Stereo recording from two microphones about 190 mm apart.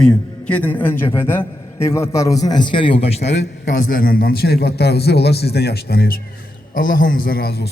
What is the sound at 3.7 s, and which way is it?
A man's voice, 45° left (ahead or behind).